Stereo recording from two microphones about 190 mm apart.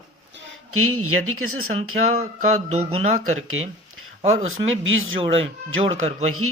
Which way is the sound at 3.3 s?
90° right.